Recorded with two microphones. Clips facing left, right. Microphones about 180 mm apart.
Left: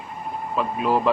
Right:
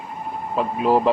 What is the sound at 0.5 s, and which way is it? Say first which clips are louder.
Speech: right 3 dB; 30° right (ahead or behind).